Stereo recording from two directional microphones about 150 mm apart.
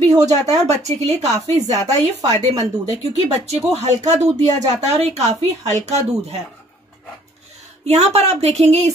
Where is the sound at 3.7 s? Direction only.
50° right (ahead or behind).